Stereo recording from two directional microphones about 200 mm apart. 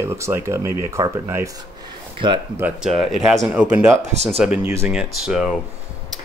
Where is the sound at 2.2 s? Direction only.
25° right (ahead or behind).